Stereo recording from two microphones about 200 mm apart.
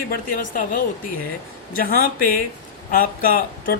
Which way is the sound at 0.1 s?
45° left (ahead or behind).